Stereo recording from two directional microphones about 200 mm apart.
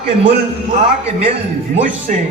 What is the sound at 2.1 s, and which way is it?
Speech, 40° right (ahead or behind).